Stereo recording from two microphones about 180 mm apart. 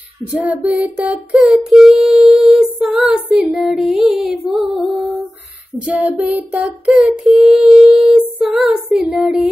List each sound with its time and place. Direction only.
0.3 s child singing: 10° right (ahead or behind)